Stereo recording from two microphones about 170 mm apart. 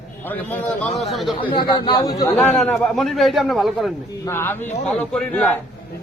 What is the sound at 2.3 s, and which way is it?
A man's voice, 5° left (ahead or behind).